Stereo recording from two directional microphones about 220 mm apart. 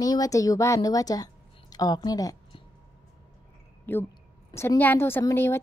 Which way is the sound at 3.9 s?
10° left (ahead or behind).